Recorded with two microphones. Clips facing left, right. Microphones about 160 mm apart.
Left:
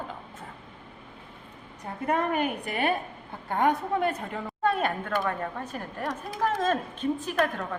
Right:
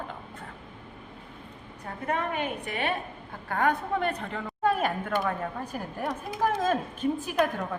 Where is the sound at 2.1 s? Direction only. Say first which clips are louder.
Left 3 dB; 40° left (ahead or behind).